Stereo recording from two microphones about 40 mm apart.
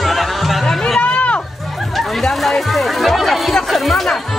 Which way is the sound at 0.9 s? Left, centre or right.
Left.